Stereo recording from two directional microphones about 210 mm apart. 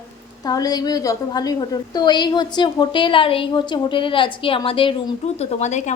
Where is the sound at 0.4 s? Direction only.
15° left (ahead or behind).